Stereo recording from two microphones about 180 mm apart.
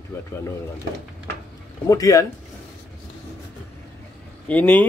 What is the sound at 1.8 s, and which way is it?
Speech, 20° left (ahead or behind).